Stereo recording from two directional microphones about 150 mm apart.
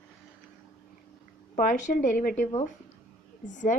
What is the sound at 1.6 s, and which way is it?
Speech, 65° left (ahead or behind).